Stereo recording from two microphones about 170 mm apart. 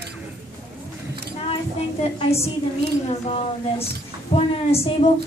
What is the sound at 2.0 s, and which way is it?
A woman's voice, 35° left (ahead or behind).